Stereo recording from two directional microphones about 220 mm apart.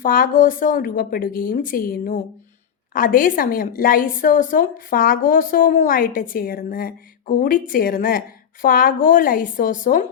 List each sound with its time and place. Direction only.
0.0 s a woman's voice: 40° left (ahead or behind)